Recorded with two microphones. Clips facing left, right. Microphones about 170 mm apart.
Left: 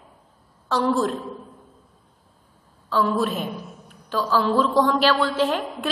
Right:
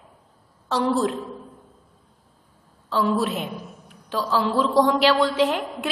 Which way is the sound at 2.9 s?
20° right (ahead or behind).